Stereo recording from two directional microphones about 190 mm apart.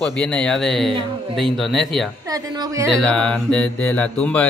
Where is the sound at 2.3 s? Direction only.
20° right (ahead or behind).